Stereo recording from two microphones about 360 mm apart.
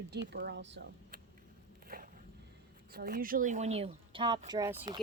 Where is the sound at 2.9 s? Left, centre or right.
Right; by 5.0 s centre.